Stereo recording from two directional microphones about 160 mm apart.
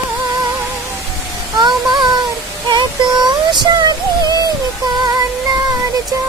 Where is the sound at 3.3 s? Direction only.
25° right (ahead or behind).